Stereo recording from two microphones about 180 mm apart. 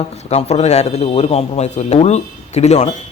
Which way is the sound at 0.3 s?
35° left (ahead or behind).